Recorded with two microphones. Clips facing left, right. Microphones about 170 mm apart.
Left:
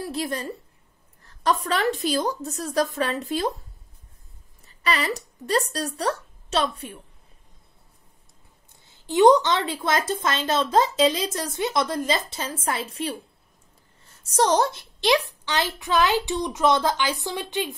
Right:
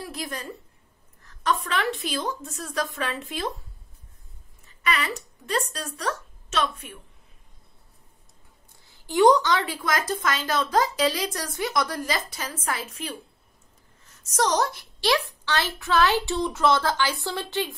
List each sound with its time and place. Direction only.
0.0 s a woman's voice: 30° left (ahead or behind)
4.6 s a woman's voice: 35° left (ahead or behind)
8.8 s a woman's voice: 20° left (ahead or behind)